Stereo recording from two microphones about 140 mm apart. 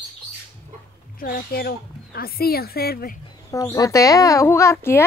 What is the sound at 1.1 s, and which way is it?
Speech, 90° left.